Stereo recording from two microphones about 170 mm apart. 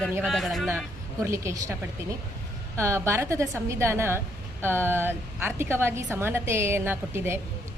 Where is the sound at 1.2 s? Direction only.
15° right (ahead or behind).